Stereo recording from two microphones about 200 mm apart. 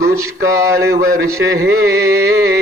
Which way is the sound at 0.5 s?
15° right (ahead or behind).